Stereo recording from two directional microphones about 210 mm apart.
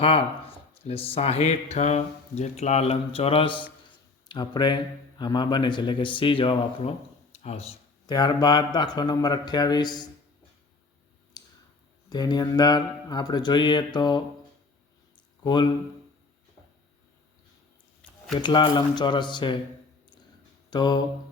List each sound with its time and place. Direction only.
0.0 s speech: 25° left (ahead or behind)
8.0 s speech: 20° left (ahead or behind)
11.3 s a sound: 20° left (ahead or behind)
12.0 s speech: 20° left (ahead or behind)
15.4 s speech: 20° left (ahead or behind)
18.0 s a sound: 5° left (ahead or behind)
18.3 s speech: 20° left (ahead or behind)
20.7 s mantra: 20° left (ahead or behind)